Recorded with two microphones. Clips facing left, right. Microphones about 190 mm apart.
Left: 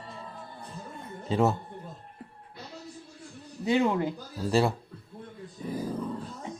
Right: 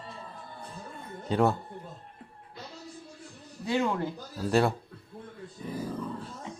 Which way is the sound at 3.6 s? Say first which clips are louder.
Left 3 dB; 20° left (ahead or behind).